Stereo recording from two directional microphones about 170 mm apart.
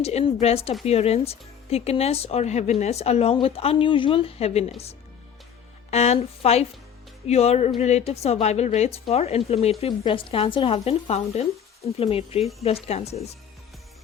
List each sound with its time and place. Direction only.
0.0 s speech: 40° left (ahead or behind)
5.9 s speech: 40° left (ahead or behind)
12.4 s speech: centre (ahead or behind)
12.6 s speech: 35° left (ahead or behind)